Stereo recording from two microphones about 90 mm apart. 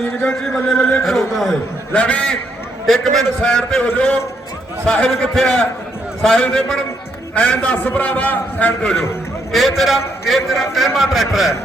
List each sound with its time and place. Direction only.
0.3 s a man's voice: 5° left (ahead or behind)
0.8 s a man's voice: 15° left (ahead or behind)
1.0 s a man's voice: centre (ahead or behind)
1.9 s a man's voice: 15° left (ahead or behind)
2.8 s a man's voice: 5° left (ahead or behind)